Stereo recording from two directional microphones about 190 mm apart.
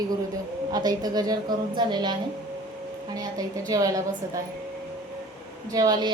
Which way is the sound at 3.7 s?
15° right (ahead or behind).